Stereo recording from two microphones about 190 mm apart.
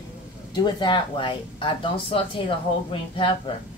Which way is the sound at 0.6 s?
25° left (ahead or behind).